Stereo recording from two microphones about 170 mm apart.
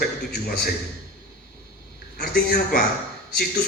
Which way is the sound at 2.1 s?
60° left (ahead or behind).